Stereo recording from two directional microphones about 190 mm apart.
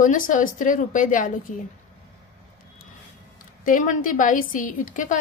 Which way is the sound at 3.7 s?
45° left (ahead or behind).